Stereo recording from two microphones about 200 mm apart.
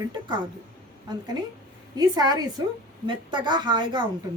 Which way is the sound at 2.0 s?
20° right (ahead or behind).